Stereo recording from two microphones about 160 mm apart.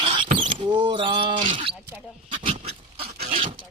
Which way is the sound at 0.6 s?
30° right (ahead or behind).